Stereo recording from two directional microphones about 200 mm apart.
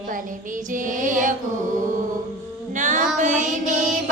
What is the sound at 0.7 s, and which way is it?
Music, 40° right (ahead or behind).